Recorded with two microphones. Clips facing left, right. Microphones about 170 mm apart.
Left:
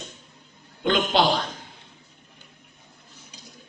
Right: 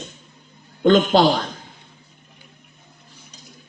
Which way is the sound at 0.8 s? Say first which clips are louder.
Right 8 dB; 45° right (ahead or behind).